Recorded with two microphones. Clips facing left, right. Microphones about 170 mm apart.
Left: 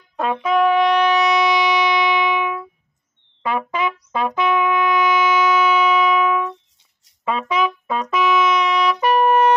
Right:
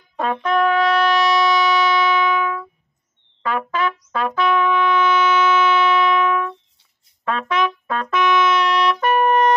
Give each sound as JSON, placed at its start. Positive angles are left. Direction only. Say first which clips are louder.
{"t": 0.1, "sound": "trumpet", "louder": "left 1 dB", "side_deg": 0}
{"t": 4.4, "sound": "music", "louder": "right 1 dB", "side_deg": 15}
{"t": 7.2, "sound": "trumpet", "louder": "even", "side_deg": 10}